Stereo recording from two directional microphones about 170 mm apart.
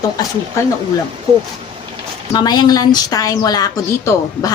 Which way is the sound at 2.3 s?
25° left (ahead or behind).